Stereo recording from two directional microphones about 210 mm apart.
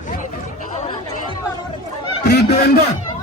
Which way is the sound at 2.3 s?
50° left (ahead or behind).